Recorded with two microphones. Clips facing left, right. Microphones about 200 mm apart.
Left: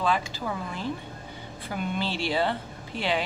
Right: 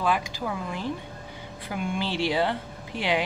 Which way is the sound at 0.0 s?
10° right (ahead or behind).